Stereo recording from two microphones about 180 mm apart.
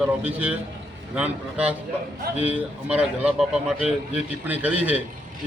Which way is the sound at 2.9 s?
5° right (ahead or behind).